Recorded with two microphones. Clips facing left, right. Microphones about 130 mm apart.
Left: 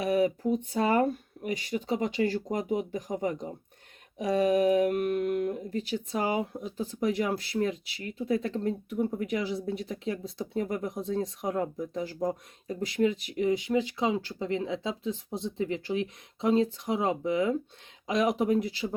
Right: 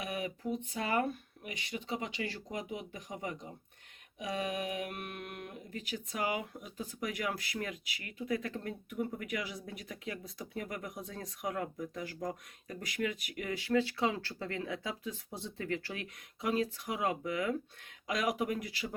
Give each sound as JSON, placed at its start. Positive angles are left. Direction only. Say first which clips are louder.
{"t": 0.0, "sound": "speech", "louder": "left 12 dB", "side_deg": 35}